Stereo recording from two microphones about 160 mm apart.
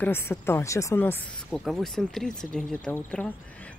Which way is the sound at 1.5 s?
Centre (ahead or behind).